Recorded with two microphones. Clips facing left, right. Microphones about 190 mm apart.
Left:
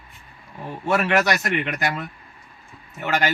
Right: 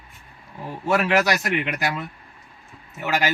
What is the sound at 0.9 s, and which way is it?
A man's voice, centre (ahead or behind).